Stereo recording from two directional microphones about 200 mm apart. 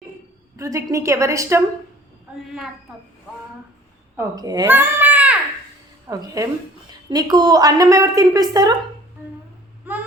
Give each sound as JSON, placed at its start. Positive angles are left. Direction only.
{"t": 0.5, "sound": "a woman's voice", "side_deg": -15}
{"t": 4.2, "sound": "a child's voice", "side_deg": -20}
{"t": 6.1, "sound": "a woman's voice", "side_deg": -15}
{"t": 9.9, "sound": "baby cry", "side_deg": -10}